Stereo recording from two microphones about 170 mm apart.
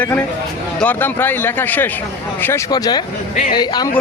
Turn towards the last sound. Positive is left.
turn(degrees=25)  # may be behind; listen again after turning